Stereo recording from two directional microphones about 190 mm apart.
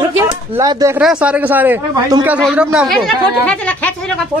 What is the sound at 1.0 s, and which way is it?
Speech, 5° right (ahead or behind).